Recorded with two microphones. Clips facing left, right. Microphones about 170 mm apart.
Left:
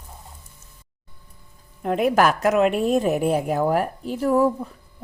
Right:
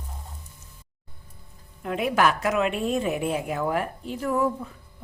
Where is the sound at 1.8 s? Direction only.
45° left (ahead or behind).